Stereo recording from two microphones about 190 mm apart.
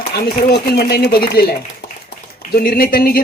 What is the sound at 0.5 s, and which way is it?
Speech, 60° left (ahead or behind).